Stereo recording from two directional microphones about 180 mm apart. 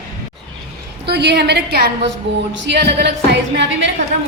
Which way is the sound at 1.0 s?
70° right (ahead or behind).